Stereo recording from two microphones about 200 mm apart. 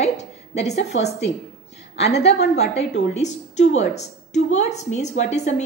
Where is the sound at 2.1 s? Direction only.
55° left (ahead or behind).